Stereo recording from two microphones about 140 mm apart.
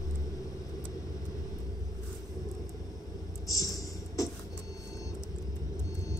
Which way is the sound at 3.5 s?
25° left (ahead or behind).